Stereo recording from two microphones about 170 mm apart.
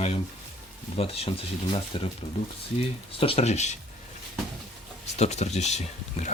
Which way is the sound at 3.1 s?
35° left (ahead or behind).